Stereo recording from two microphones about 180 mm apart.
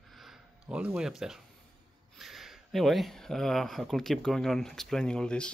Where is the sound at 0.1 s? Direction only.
Centre (ahead or behind).